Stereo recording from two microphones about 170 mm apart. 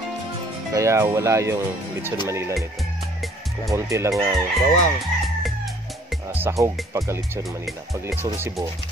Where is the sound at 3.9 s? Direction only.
20° right (ahead or behind).